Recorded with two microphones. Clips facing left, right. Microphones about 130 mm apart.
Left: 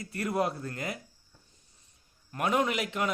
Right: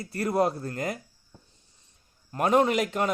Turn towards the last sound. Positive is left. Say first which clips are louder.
# right 5 dB
turn(degrees=-40)  # may be behind; listen again after turning